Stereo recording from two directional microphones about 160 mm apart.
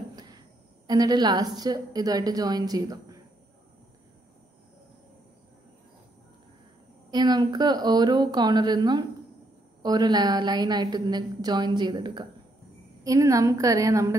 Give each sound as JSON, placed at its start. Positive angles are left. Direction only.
{"t": 0.1, "sound": "a sound", "side_deg": -25}
{"t": 0.8, "sound": "a woman's voice", "side_deg": -25}
{"t": 7.1, "sound": "a woman's voice", "side_deg": -25}